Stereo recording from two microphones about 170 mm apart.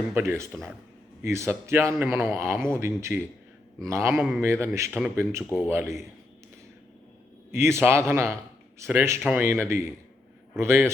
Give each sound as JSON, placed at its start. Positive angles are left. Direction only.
{"t": 0.1, "sound": "a man's voice", "side_deg": -15}
{"t": 7.5, "sound": "a man's voice", "side_deg": -15}